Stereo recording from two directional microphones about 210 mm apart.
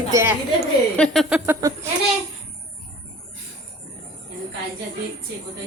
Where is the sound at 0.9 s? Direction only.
5° left (ahead or behind).